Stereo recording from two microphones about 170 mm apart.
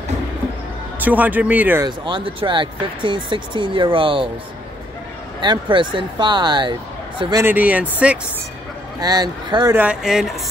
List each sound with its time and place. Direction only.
1.0 s speech: 10° right (ahead or behind)
1.9 s speech: 30° right (ahead or behind)
5.4 s speech: 30° right (ahead or behind)
7.4 s speech: 10° right (ahead or behind)
9.0 s speech: 25° right (ahead or behind)
9.8 s speech: 5° right (ahead or behind)